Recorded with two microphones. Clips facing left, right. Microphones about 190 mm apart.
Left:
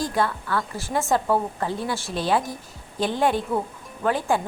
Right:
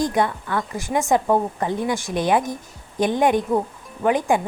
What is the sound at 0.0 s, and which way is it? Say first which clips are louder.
Speech: right 4 dB; 20° right (ahead or behind).